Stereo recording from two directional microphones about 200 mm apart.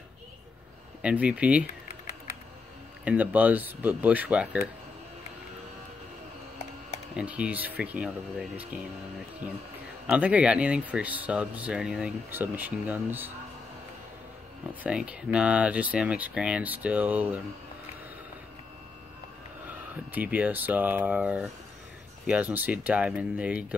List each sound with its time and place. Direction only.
1.0 s speech: 5° right (ahead or behind)
3.1 s speech: 10° right (ahead or behind)
7.2 s speech: 5° right (ahead or behind)
10.0 s speech: 5° right (ahead or behind)
14.7 s speech: 5° right (ahead or behind)
20.1 s speech: 10° right (ahead or behind)